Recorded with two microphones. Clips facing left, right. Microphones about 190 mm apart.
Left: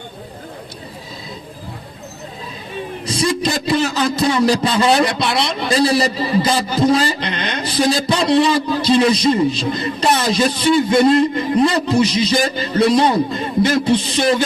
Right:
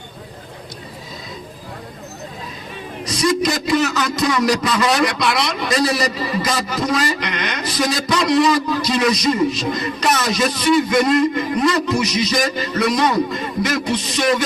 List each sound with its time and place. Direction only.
3.0 s a man's voice: 30° left (ahead or behind)